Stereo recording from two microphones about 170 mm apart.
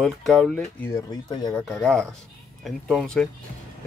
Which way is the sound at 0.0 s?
Centre (ahead or behind).